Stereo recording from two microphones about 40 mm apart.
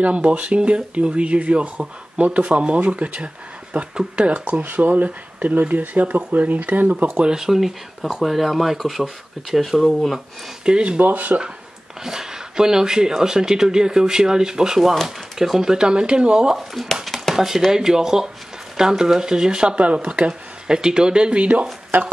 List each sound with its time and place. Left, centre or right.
0.0 s speech: right
3.9 s speech: centre
4.3 s speech: right
7.2 s speech: centre
10.6 s speech: right
11.0 s speech: right
12.0 s speech: centre
16.5 s speech: centre
17.6 s speech: centre
19.7 s speech: right